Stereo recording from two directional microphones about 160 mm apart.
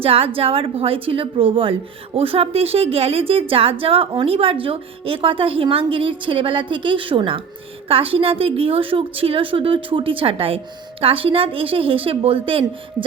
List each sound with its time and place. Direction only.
0.0 s a woman's voice: 35° right (ahead or behind)